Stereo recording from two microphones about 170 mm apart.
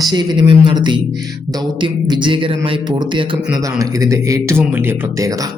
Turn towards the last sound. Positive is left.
turn(degrees=-20)  # may be behind; listen again after turning